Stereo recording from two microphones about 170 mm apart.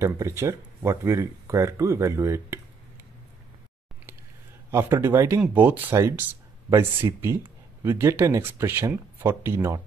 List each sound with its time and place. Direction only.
0.0 s speech: 15° right (ahead or behind)
4.6 s speech: 15° right (ahead or behind)